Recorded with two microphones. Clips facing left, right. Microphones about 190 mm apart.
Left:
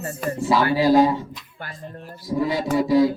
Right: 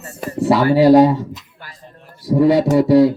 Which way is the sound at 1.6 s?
50° left (ahead or behind).